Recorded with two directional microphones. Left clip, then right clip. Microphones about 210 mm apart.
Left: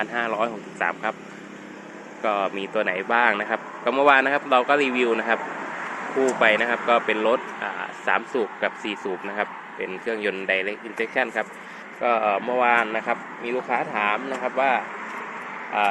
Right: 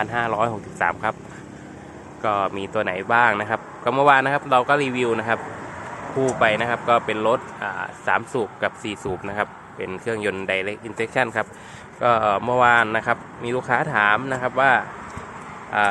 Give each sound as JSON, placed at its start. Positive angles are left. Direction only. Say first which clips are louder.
{"t": 0.0, "sound": "speech", "louder": "right 3 dB", "side_deg": -10}
{"t": 2.2, "sound": "a man's voice", "louder": "right 2 dB", "side_deg": -5}
{"t": 6.4, "sound": "speech", "louder": "even", "side_deg": -5}